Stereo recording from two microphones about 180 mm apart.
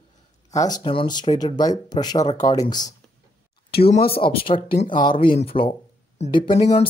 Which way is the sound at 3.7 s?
30° left (ahead or behind).